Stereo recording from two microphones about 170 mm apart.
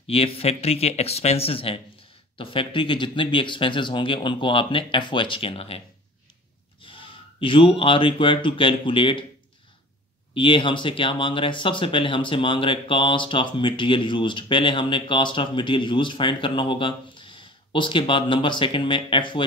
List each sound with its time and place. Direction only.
0.0 s speech: 35° left (ahead or behind)
6.8 s speech: 30° left (ahead or behind)
10.3 s speech: 30° left (ahead or behind)